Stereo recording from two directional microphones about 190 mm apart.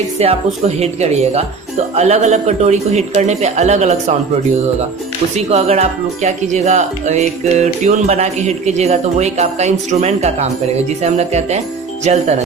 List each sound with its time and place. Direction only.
0.2 s speech: 35° right (ahead or behind)
5.5 s speech: 35° right (ahead or behind)